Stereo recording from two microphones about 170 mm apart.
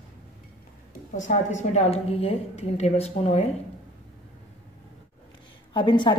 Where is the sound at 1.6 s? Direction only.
40° left (ahead or behind).